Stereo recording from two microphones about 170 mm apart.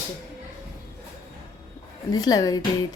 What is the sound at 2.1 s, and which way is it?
Speech, 20° left (ahead or behind).